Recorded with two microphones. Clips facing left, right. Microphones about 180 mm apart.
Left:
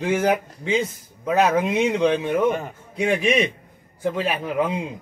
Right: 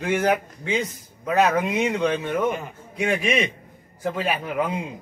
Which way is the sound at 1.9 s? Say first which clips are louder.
Left 3 dB; 15° left (ahead or behind).